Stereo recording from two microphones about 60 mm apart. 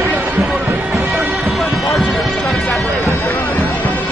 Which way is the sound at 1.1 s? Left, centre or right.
Centre.